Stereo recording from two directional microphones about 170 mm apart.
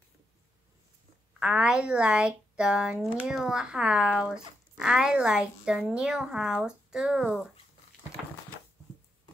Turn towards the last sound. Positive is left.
turn(degrees=-5)  # may be behind; listen again after turning